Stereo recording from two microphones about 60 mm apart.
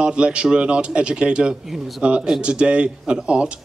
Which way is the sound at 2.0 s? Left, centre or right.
Centre.